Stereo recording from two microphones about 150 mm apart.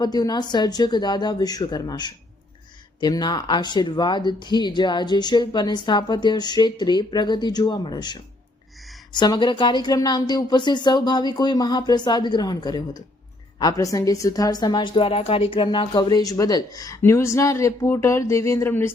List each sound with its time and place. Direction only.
0.0 s speech: 25° left (ahead or behind)